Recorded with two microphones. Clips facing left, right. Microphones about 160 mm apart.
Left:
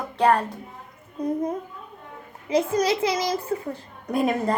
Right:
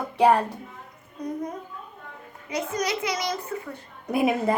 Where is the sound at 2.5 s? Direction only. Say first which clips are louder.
Left 6 dB; 30° left (ahead or behind).